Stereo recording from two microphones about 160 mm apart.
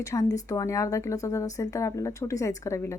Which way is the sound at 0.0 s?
20° left (ahead or behind).